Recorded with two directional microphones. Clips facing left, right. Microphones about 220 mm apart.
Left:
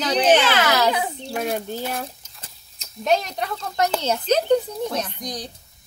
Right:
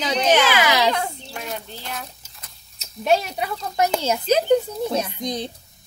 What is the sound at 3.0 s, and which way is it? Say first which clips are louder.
Speech: right 1 dB; 5° right (ahead or behind).